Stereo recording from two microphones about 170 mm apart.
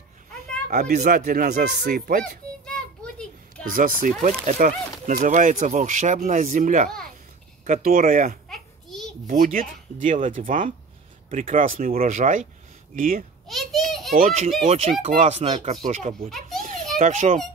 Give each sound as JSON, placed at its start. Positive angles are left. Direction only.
{"t": 0.7, "sound": "speech", "side_deg": -60}
{"t": 2.6, "sound": "a sound", "side_deg": 5}
{"t": 3.7, "sound": "speech", "side_deg": -55}
{"t": 8.5, "sound": "a sound", "side_deg": 0}
{"t": 9.6, "sound": "speech", "side_deg": -50}
{"t": 13.5, "sound": "a sound", "side_deg": 0}
{"t": 14.1, "sound": "speech", "side_deg": -55}
{"t": 14.6, "sound": "speech", "side_deg": -40}
{"t": 16.3, "sound": "a child's voice", "side_deg": 0}
{"t": 17.0, "sound": "speech", "side_deg": -45}